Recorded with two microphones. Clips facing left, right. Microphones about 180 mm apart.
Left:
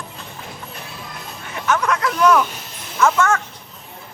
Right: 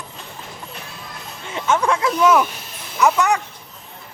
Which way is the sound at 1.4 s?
25° right (ahead or behind).